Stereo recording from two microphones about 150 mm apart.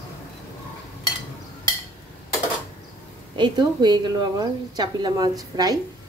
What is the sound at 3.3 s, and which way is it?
Speech, 30° right (ahead or behind).